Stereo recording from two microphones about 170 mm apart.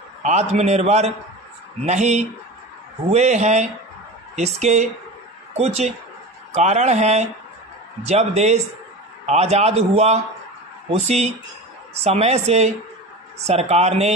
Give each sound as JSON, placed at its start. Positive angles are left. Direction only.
{"t": 0.2, "sound": "a man's voice", "side_deg": -40}